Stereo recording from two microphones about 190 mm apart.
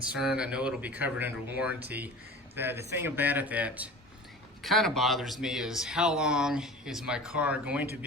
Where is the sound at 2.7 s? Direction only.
60° right (ahead or behind).